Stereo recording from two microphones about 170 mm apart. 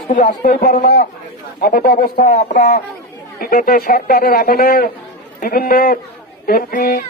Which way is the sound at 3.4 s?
60° left (ahead or behind).